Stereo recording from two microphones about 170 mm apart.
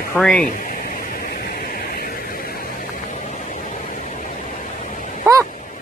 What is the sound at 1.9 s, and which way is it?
Vehicle, 60° left (ahead or behind).